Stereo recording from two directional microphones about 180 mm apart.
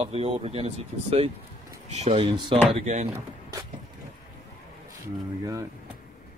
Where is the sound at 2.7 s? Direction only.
40° right (ahead or behind).